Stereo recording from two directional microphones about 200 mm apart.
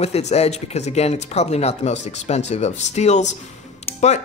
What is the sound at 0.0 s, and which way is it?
Speech, 30° left (ahead or behind).